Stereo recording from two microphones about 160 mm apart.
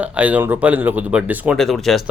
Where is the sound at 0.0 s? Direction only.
10° right (ahead or behind).